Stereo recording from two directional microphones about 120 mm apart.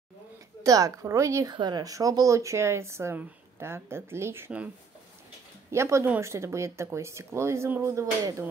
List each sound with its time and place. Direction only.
0.7 s speech: 30° right (ahead or behind)
1.5 s speech: 35° right (ahead or behind); by 4.5 s 20° right (ahead or behind)
5.7 s speech: 25° right (ahead or behind)